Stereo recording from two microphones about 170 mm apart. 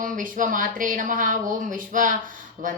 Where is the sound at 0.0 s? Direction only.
50° right (ahead or behind).